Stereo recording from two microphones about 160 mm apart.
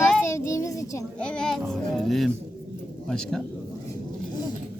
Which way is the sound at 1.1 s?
5° left (ahead or behind).